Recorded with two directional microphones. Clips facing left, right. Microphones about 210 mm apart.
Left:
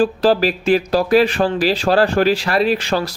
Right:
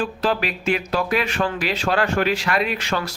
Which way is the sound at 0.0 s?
35° left (ahead or behind).